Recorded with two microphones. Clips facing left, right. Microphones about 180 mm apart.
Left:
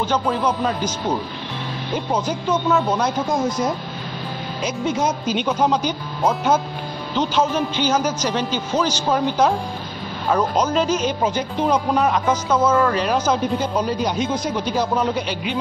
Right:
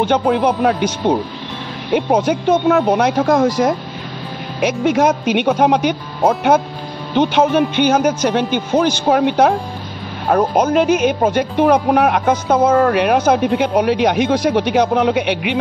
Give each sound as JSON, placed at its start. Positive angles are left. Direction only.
{"t": 0.0, "sound": "speech", "side_deg": -60}
{"t": 4.6, "sound": "speech", "side_deg": -70}